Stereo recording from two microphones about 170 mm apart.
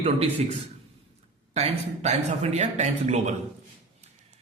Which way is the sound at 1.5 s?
40° right (ahead or behind).